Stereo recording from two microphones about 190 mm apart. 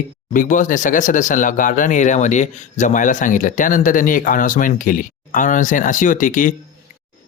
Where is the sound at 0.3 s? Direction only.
45° left (ahead or behind).